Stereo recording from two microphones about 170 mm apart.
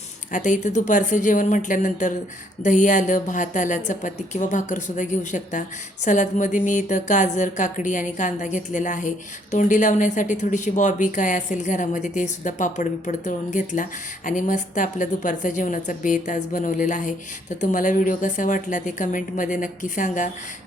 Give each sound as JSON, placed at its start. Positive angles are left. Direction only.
{"t": 0.3, "sound": "speech", "side_deg": 50}